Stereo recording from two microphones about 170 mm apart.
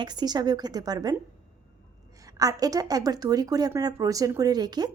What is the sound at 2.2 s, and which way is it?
A woman's voice, 20° right (ahead or behind).